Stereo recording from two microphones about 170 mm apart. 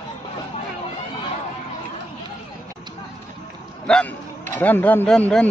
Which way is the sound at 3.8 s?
5° left (ahead or behind).